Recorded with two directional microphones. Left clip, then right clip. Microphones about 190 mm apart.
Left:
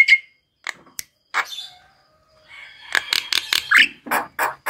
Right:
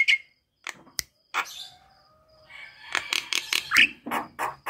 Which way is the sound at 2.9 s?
15° left (ahead or behind).